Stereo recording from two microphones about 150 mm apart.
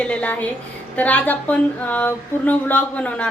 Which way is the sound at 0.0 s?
10° left (ahead or behind).